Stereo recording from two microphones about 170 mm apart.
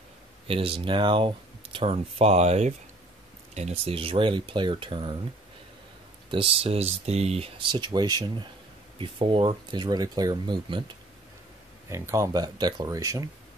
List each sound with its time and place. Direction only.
0.5 s speech: 30° right (ahead or behind)
6.3 s speech: 35° right (ahead or behind)